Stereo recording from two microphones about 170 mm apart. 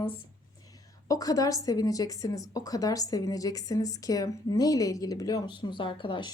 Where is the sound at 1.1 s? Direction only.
20° left (ahead or behind).